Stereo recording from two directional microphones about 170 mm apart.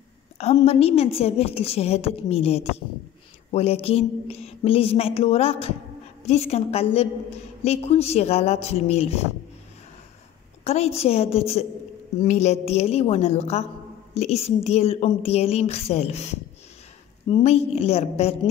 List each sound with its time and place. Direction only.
0.7 s a woman's voice: 35° left (ahead or behind)
10.6 s a woman's voice: 40° left (ahead or behind)
17.3 s a woman's voice: 40° left (ahead or behind)